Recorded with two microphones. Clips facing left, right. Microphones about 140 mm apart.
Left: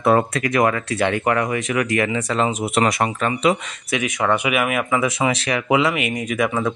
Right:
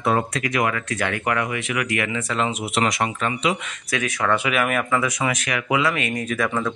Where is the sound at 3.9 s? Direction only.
20° left (ahead or behind).